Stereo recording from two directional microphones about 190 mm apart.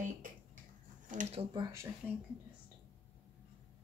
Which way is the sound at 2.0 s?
10° left (ahead or behind).